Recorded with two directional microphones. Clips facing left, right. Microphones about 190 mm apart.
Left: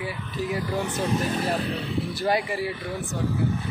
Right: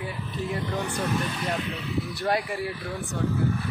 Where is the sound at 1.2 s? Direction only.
35° left (ahead or behind).